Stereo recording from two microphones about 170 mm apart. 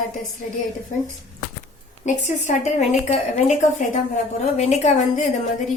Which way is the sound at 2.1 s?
45° left (ahead or behind).